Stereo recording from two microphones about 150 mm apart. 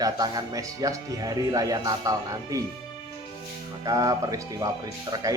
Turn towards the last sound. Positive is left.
turn(degrees=-25)  # may be behind; listen again after turning